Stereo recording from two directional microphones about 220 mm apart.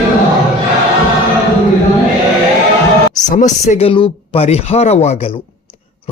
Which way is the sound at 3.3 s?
35° left (ahead or behind).